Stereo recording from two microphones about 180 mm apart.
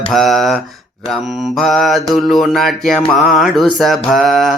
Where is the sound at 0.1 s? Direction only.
Centre (ahead or behind).